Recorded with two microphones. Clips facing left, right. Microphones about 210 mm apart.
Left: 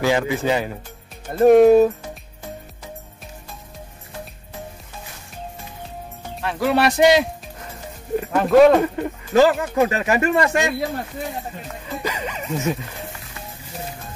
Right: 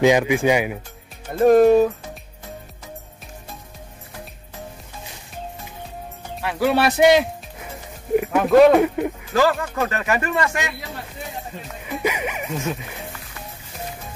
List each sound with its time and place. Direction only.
0.0 s speech: 15° right (ahead or behind)
1.4 s speech: centre (ahead or behind)
6.4 s speech: centre (ahead or behind)
9.3 s speech: 20° left (ahead or behind)
11.8 s speech: 15° right (ahead or behind)